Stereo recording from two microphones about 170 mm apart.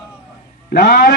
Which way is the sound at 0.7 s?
65° left (ahead or behind).